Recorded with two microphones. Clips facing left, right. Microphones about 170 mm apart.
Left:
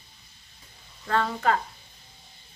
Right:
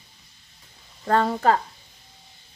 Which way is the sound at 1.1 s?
40° right (ahead or behind).